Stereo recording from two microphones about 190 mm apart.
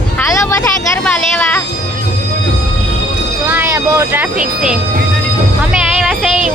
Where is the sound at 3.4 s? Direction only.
10° right (ahead or behind).